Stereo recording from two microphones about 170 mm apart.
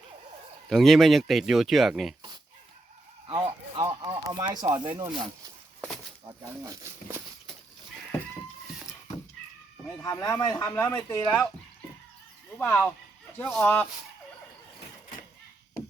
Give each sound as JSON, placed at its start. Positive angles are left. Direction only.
{"t": 0.7, "sound": "speech", "side_deg": 0}
{"t": 3.2, "sound": "speech", "side_deg": -30}
{"t": 3.8, "sound": "speech", "side_deg": -20}
{"t": 10.0, "sound": "speech", "side_deg": 20}
{"t": 12.5, "sound": "speech", "side_deg": 10}